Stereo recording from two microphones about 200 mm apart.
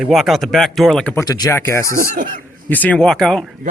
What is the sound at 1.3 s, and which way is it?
Speech, 20° left (ahead or behind).